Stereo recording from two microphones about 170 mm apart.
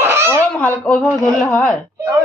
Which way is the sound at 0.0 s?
15° right (ahead or behind).